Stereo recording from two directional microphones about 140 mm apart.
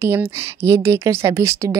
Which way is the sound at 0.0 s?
20° right (ahead or behind).